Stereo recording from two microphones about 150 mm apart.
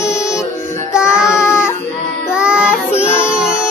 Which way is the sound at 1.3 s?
20° left (ahead or behind).